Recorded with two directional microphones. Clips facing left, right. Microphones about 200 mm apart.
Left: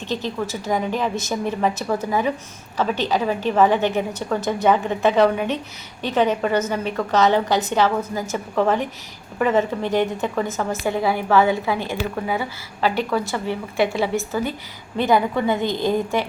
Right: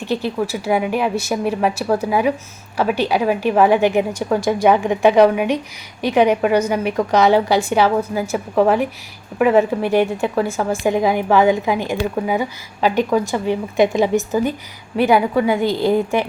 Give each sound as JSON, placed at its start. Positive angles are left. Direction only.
{"t": 0.0, "sound": "a woman's voice", "side_deg": -10}
{"t": 15.6, "sound": "a woman's voice", "side_deg": 20}